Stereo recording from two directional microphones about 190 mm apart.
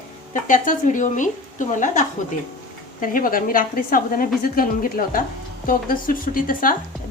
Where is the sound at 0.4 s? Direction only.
45° left (ahead or behind).